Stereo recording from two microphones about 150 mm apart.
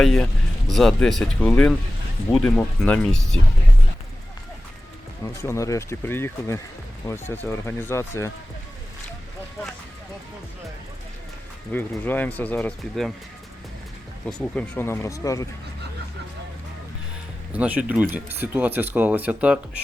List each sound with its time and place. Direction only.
0.7 s speech: 5° left (ahead or behind)
5.4 s speech: 20° left (ahead or behind)
11.7 s speech: 15° left (ahead or behind)
14.3 s speech: 5° left (ahead or behind)
14.8 s speech: 20° left (ahead or behind)
17.5 s speech: 10° right (ahead or behind)